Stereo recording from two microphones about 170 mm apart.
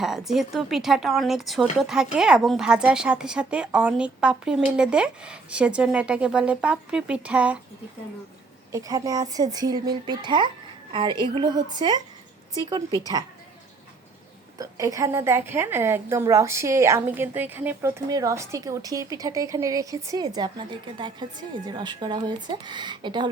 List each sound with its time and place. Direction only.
0.0 s a woman's voice: centre (ahead or behind)
8.7 s a woman's voice: 20° right (ahead or behind)
14.6 s a woman's voice: 20° right (ahead or behind)